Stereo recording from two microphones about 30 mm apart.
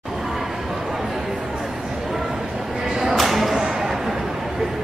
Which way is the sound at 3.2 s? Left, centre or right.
Centre.